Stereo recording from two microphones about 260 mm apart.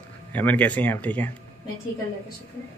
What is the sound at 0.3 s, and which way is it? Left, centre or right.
Speech, centre.